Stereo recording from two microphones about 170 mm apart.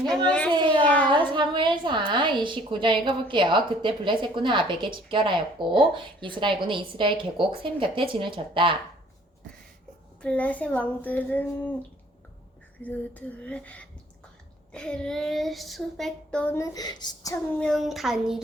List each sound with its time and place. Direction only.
0.3 s speech: 5° left (ahead or behind)
0.5 s a sound: 30° right (ahead or behind)
0.9 s a sound: 10° left (ahead or behind)
1.1 s a woman's voice: 30° right (ahead or behind)
10.2 s speech: 5° left (ahead or behind)
12.8 s speech: 10° left (ahead or behind)
14.7 s child singing: 5° left (ahead or behind); by 17.3 s 25° left (ahead or behind)
17.5 s child singing: 5° left (ahead or behind)